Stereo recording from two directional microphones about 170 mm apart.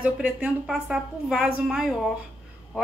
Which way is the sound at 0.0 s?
10° right (ahead or behind).